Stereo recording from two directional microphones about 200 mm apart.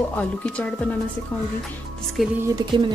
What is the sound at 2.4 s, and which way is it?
Speech, 25° right (ahead or behind).